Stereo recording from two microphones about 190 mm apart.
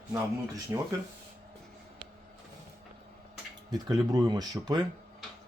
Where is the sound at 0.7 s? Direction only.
20° right (ahead or behind).